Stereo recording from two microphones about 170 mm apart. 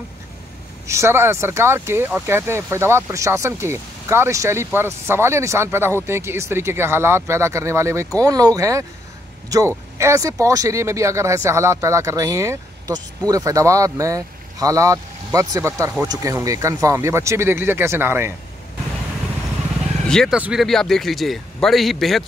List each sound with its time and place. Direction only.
0.8 s speech: 15° right (ahead or behind)
20.1 s a man's voice: 5° left (ahead or behind)